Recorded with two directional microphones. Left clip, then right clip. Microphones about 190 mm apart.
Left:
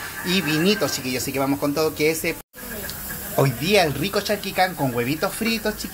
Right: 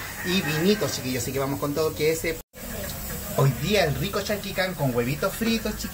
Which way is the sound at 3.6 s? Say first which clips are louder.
Left 5 dB; 30° left (ahead or behind).